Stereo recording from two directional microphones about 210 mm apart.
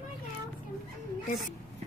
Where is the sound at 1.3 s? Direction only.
40° left (ahead or behind).